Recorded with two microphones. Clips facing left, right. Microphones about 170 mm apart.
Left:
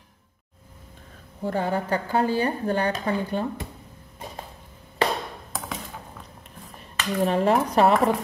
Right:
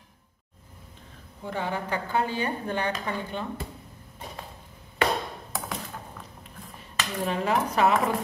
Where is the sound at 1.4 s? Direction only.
40° left (ahead or behind).